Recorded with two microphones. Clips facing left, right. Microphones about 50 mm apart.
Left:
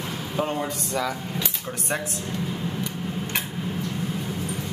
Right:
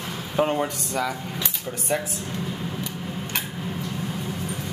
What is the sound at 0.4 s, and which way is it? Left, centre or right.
Speech, centre.